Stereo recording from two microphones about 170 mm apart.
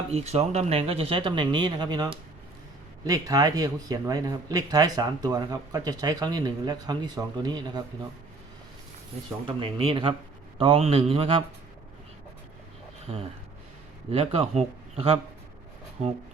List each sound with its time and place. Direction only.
0.1 s speech: 40° right (ahead or behind); by 7.9 s 25° right (ahead or behind)
9.6 s speech: 30° right (ahead or behind)
13.1 s speech: 30° right (ahead or behind)